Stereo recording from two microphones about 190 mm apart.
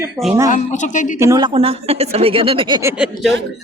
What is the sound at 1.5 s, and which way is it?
A woman's voice, 30° right (ahead or behind).